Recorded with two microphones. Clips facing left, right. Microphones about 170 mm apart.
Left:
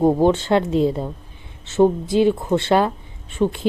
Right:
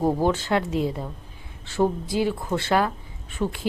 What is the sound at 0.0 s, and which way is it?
Speech, 25° left (ahead or behind).